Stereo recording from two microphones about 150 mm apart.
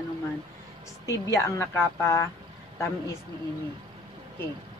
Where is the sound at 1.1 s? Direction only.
20° left (ahead or behind).